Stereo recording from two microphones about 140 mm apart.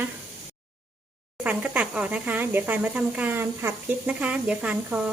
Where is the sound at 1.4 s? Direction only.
10° right (ahead or behind).